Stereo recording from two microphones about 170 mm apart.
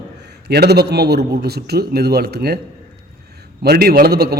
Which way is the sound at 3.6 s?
65° right (ahead or behind).